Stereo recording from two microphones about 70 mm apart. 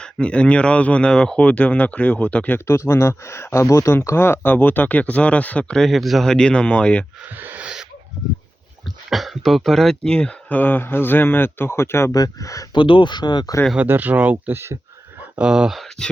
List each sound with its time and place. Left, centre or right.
0.0 s speech: centre
2.6 s a man's voice: left
3.9 s speech: left; by 5.7 s centre
5.7 s speech: centre
6.2 s speech: centre
7.3 s speech: right
7.6 s owl: centre
9.0 s speech: centre
10.6 s a man's voice: left
12.1 s speech: left
12.7 s speech: left
13.8 s speech: right
14.5 s speech: right
15.4 s speech: centre